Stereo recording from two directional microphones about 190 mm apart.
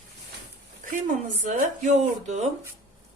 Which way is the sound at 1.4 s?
40° right (ahead or behind).